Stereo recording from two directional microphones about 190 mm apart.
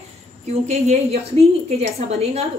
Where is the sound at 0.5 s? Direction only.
35° right (ahead or behind).